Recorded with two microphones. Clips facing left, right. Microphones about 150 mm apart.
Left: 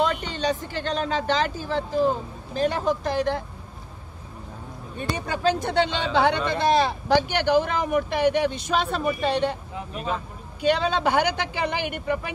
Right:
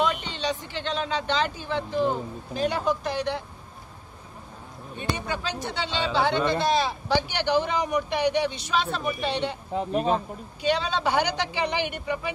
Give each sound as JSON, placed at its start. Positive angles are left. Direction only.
{"t": 0.0, "sound": "speech", "side_deg": 40}
{"t": 4.9, "sound": "speech", "side_deg": 50}
{"t": 9.8, "sound": "speech", "side_deg": -35}
{"t": 10.6, "sound": "speech", "side_deg": 55}